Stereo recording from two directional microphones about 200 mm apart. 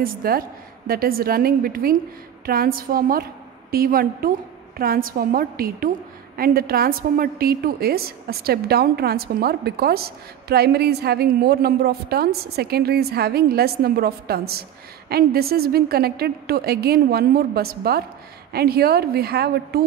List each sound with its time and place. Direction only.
0.0 s a woman's voice: 45° right (ahead or behind)